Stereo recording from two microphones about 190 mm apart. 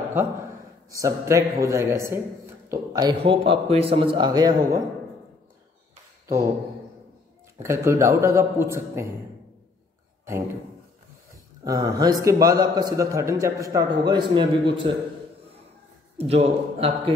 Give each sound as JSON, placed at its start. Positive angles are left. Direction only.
{"t": 0.8, "sound": "a man's voice", "side_deg": -15}
{"t": 7.5, "sound": "a man's voice", "side_deg": -15}
{"t": 11.6, "sound": "a man's voice", "side_deg": -20}
{"t": 16.3, "sound": "a man's voice", "side_deg": -35}